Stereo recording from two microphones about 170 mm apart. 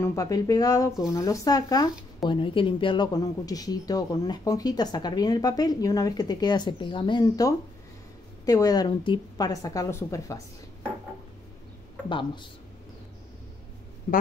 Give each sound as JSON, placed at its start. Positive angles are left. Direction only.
{"t": 0.0, "sound": "speech", "side_deg": 20}
{"t": 12.1, "sound": "speech", "side_deg": 30}
{"t": 14.1, "sound": "speech", "side_deg": 50}